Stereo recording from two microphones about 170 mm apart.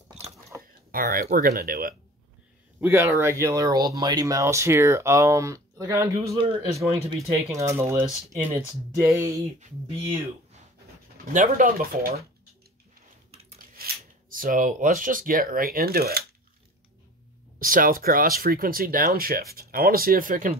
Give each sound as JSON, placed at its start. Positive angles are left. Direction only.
{"t": 0.9, "sound": "speech", "side_deg": -55}
{"t": 2.8, "sound": "speech", "side_deg": -10}
{"t": 6.3, "sound": "speech", "side_deg": -30}
{"t": 7.4, "sound": "speech", "side_deg": -15}
{"t": 9.6, "sound": "speech", "side_deg": -30}
{"t": 11.3, "sound": "speech", "side_deg": -50}
{"t": 13.3, "sound": "a sound", "side_deg": -35}
{"t": 14.3, "sound": "speech", "side_deg": -55}
{"t": 17.6, "sound": "speech", "side_deg": -55}